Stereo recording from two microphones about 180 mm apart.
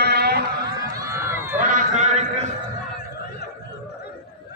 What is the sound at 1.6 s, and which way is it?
Run, 45° right (ahead or behind).